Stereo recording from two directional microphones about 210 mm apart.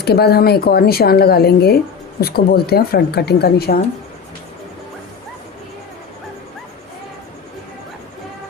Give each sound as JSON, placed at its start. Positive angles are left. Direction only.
{"t": 0.0, "sound": "speech", "side_deg": 50}